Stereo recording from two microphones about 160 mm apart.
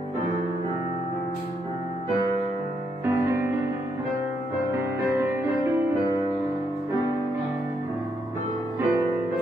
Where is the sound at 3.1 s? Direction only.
15° right (ahead or behind).